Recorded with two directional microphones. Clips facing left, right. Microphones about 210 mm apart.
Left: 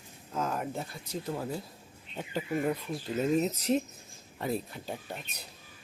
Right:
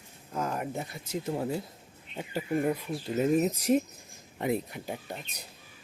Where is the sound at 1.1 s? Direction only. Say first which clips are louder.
Right 4 dB; 25° right (ahead or behind).